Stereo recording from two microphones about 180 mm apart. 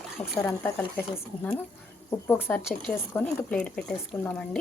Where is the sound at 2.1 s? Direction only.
10° left (ahead or behind).